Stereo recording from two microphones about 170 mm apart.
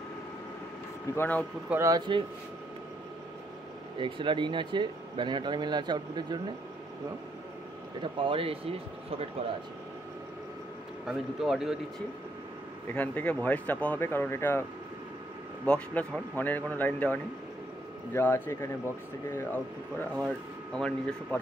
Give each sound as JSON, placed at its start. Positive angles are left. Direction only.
{"t": 1.1, "sound": "speech", "side_deg": 10}
{"t": 1.7, "sound": "speech", "side_deg": -20}
{"t": 4.0, "sound": "speech", "side_deg": -30}
{"t": 8.0, "sound": "speech", "side_deg": -30}
{"t": 11.1, "sound": "speech", "side_deg": -5}
{"t": 12.9, "sound": "speech", "side_deg": 10}
{"t": 15.6, "sound": "speech", "side_deg": 5}